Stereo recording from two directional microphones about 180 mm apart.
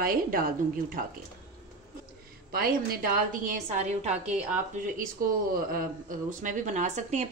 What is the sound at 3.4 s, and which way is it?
Speech, 45° right (ahead or behind).